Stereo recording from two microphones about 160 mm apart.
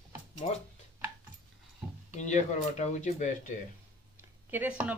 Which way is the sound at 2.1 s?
45° left (ahead or behind).